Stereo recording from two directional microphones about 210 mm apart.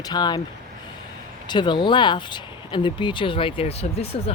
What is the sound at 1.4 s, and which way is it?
Speech, 20° left (ahead or behind).